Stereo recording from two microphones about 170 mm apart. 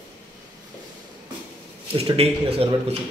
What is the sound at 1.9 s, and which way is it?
Speech, 35° right (ahead or behind).